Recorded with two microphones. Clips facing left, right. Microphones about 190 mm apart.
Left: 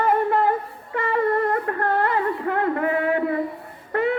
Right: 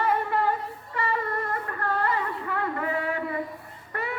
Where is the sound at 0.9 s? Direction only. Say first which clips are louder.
Left 8 dB; 55° left (ahead or behind).